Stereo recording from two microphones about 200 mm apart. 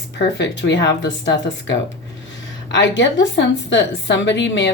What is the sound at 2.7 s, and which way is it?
A woman's voice, 65° left (ahead or behind).